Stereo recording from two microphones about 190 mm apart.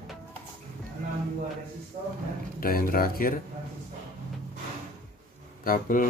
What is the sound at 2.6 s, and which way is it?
Speech, 50° left (ahead or behind).